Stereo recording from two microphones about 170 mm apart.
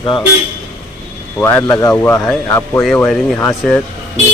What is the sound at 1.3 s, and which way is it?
Speech, 10° left (ahead or behind).